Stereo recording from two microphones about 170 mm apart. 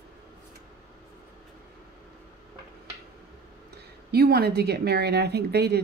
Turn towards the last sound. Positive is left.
turn(degrees=-70)  # may be behind; listen again after turning